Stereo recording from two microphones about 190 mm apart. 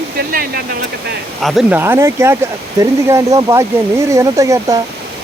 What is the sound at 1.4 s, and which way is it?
Speech, centre (ahead or behind).